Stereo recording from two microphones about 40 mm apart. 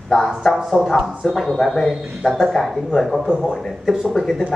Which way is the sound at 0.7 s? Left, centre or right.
Centre.